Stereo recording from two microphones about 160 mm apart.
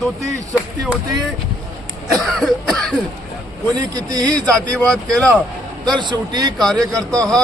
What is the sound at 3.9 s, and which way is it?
Speech, 25° right (ahead or behind).